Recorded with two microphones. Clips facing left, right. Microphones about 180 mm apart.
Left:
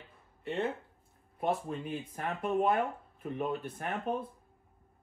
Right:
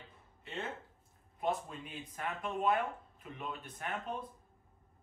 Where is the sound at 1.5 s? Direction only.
55° left (ahead or behind).